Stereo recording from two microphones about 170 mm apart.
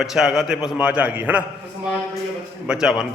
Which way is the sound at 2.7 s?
5° right (ahead or behind).